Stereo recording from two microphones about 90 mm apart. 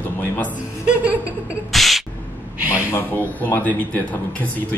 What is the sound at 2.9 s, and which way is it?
Speech, 20° left (ahead or behind).